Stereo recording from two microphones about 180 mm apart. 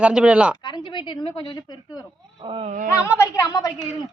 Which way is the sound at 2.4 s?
35° right (ahead or behind).